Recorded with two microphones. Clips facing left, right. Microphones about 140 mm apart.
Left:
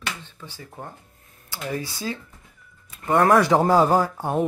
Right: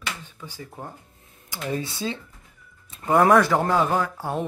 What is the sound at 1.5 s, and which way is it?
Speech, 25° right (ahead or behind).